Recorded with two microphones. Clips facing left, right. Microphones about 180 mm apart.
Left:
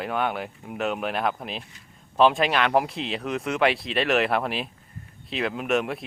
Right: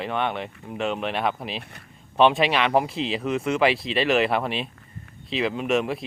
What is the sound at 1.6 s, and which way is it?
Speech, 60° right (ahead or behind).